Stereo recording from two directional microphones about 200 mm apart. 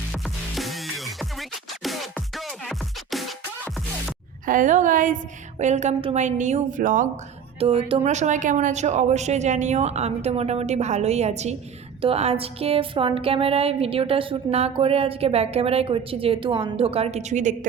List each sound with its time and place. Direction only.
0.1 s music: centre (ahead or behind)
4.4 s speech: 40° right (ahead or behind)
7.6 s speech: 30° right (ahead or behind)